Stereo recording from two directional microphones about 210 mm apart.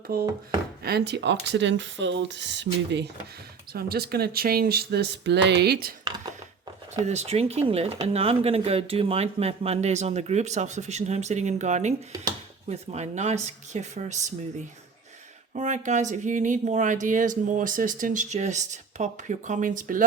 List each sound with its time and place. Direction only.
0.1 s speech: 45° right (ahead or behind)
7.0 s speech: 30° right (ahead or behind)
15.5 s speech: 35° right (ahead or behind)